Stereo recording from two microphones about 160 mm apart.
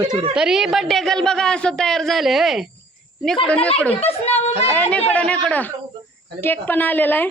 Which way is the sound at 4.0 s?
40° left (ahead or behind).